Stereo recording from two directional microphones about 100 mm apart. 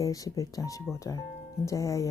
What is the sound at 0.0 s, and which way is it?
Speech, 35° left (ahead or behind).